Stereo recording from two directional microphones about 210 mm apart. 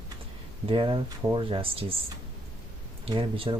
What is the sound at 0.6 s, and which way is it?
Speech, 25° right (ahead or behind).